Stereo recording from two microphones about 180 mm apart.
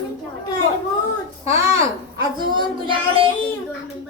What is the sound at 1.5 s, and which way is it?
A child's voice, 20° right (ahead or behind).